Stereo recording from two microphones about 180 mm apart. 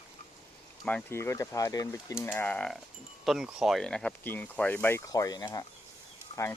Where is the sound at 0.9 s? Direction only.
10° left (ahead or behind).